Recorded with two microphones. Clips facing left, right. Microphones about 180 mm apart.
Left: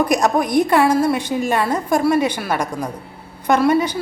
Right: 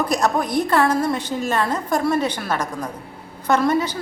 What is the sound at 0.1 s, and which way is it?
A woman's voice, 15° left (ahead or behind).